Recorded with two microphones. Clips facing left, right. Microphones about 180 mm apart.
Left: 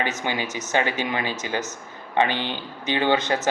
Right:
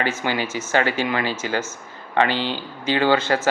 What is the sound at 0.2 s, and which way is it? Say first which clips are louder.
Speech: right 3 dB; 15° left (ahead or behind).